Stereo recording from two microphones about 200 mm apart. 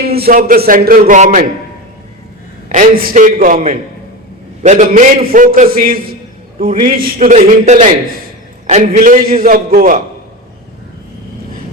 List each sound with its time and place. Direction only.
0.0 s a man's voice: 50° right (ahead or behind)
2.6 s a man's voice: 40° right (ahead or behind)
4.6 s a man's voice: 40° right (ahead or behind)